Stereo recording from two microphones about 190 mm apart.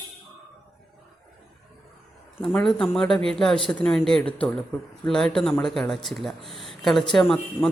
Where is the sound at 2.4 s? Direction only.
Centre (ahead or behind).